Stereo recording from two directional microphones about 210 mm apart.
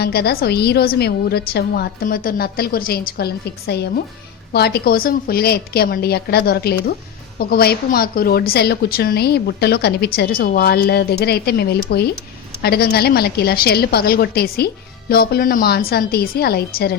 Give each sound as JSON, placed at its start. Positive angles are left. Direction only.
{"t": 0.0, "sound": "a woman's voice", "side_deg": 50}